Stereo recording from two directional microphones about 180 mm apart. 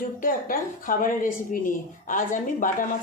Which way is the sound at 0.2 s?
50° left (ahead or behind).